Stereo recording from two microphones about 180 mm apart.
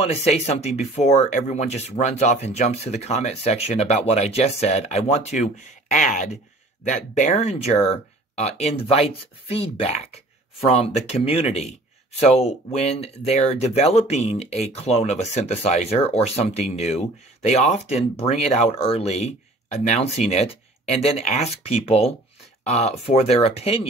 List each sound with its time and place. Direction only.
0.0 s speech: 35° left (ahead or behind)